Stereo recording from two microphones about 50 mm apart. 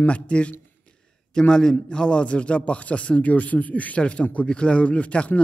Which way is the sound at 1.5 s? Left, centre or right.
Centre.